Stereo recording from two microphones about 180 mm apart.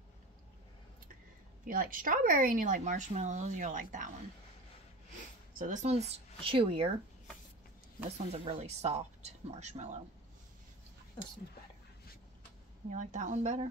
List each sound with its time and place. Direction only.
1.6 s speech: 50° right (ahead or behind)
5.6 s speech: 45° right (ahead or behind)
8.3 s speech: 35° right (ahead or behind)
12.9 s speech: 40° right (ahead or behind)